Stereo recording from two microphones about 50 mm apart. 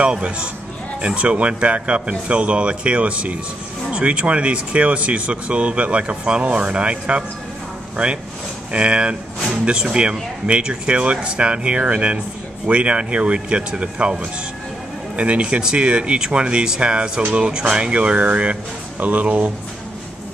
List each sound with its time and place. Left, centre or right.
0.0 s speech: right
8.7 s speech: right
15.1 s speech: right